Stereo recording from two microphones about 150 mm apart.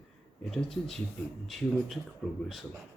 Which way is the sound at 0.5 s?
Centre (ahead or behind).